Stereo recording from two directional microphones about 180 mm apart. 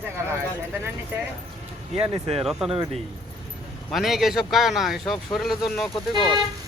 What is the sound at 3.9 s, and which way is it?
Speech, centre (ahead or behind).